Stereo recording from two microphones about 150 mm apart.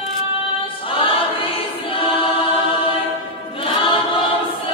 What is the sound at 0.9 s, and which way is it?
Choir, 35° left (ahead or behind).